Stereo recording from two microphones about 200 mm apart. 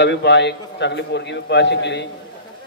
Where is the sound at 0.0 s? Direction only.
60° left (ahead or behind).